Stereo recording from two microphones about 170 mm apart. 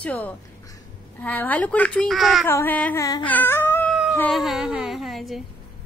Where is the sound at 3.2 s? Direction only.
10° left (ahead or behind).